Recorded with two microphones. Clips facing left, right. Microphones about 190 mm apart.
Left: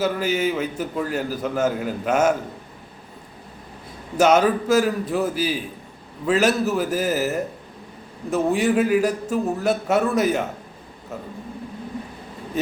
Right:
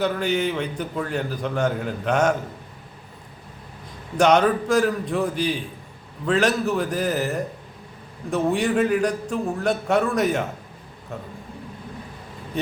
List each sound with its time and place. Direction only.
0.0 s a man's voice: 5° left (ahead or behind)
4.2 s a man's voice: 5° left (ahead or behind)